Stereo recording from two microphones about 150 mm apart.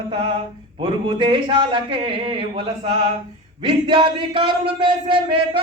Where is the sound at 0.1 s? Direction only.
35° right (ahead or behind).